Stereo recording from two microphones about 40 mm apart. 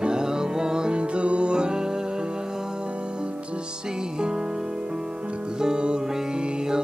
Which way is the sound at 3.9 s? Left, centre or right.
Centre.